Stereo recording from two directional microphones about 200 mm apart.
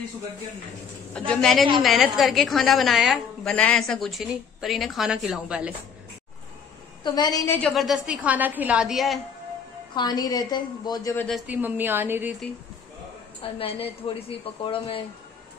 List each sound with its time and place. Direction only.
1.3 s a woman's voice: 5° left (ahead or behind)
7.0 s a woman's voice: 20° left (ahead or behind); by 9.2 s centre (ahead or behind)
9.9 s a woman's voice: 20° left (ahead or behind)
11.2 s a woman's voice: 5° right (ahead or behind)
13.4 s a woman's voice: 30° left (ahead or behind)